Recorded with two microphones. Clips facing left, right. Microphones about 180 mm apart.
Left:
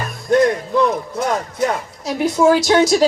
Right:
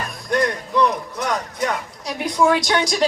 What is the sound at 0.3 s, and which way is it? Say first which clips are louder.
Music: left 7 dB; 25° left (ahead or behind).